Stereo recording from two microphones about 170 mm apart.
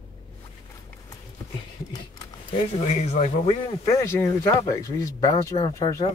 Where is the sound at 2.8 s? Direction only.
40° left (ahead or behind).